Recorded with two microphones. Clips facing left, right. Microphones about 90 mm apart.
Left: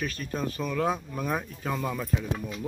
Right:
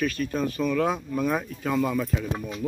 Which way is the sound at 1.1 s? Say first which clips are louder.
Right 5 dB; 5° left (ahead or behind).